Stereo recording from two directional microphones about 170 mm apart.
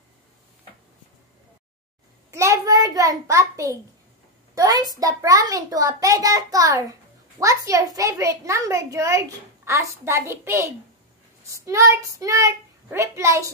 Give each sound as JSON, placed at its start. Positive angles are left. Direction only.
{"t": 2.3, "sound": "a child's voice", "side_deg": -20}